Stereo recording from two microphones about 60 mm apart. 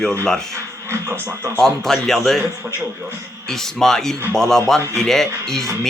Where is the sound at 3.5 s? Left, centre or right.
Centre.